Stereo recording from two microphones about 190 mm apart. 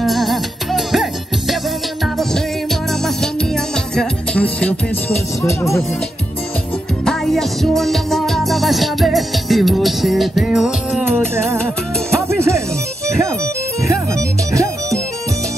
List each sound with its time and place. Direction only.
0.0 s music: centre (ahead or behind)
2.1 s music: centre (ahead or behind)
7.1 s music: centre (ahead or behind); by 12.6 s 15° right (ahead or behind)
13.8 s music: 15° right (ahead or behind)